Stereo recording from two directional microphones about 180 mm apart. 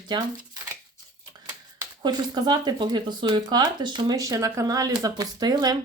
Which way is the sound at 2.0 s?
25° right (ahead or behind).